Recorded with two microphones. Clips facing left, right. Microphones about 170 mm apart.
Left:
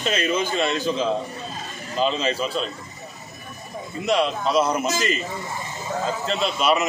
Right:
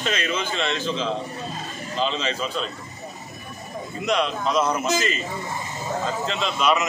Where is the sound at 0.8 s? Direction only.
10° left (ahead or behind).